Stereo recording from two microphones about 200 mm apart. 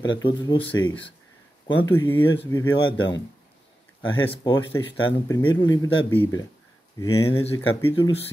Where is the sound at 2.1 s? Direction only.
10° left (ahead or behind).